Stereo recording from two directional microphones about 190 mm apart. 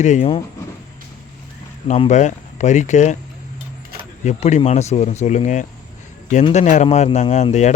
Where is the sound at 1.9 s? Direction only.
40° left (ahead or behind).